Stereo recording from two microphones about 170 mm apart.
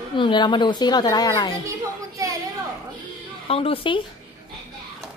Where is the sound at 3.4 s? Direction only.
35° left (ahead or behind).